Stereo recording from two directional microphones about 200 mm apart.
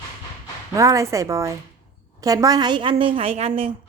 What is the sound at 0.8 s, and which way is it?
A woman's voice, 15° right (ahead or behind).